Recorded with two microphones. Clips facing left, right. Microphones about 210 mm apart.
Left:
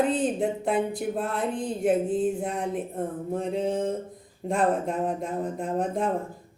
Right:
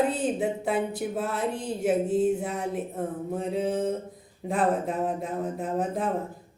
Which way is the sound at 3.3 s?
5° right (ahead or behind).